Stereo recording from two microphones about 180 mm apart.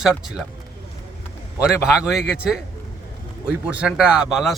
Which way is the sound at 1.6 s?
5° right (ahead or behind).